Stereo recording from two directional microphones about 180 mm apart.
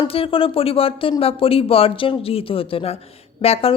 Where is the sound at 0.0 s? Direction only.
30° left (ahead or behind).